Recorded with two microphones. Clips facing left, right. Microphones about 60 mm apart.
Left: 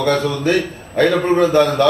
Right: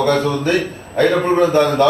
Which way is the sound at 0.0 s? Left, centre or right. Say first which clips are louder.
Right 1 dB; right.